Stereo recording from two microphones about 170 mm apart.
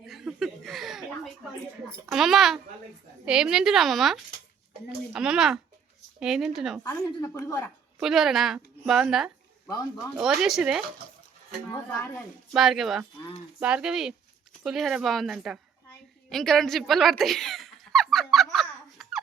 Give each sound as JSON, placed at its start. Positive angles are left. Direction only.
{"t": 0.0, "sound": "a sound", "side_deg": 0}
{"t": 2.0, "sound": "a woman's voice", "side_deg": 0}
{"t": 6.8, "sound": "a woman's voice", "side_deg": 20}
{"t": 7.9, "sound": "a woman's voice", "side_deg": 0}
{"t": 9.6, "sound": "a woman's voice", "side_deg": 20}
{"t": 10.2, "sound": "a woman's voice", "side_deg": 0}
{"t": 11.7, "sound": "speech", "side_deg": 15}
{"t": 12.5, "sound": "a woman's voice", "side_deg": 0}
{"t": 16.3, "sound": "a sound", "side_deg": 0}